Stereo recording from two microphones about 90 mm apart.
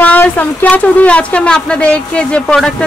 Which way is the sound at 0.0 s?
20° left (ahead or behind).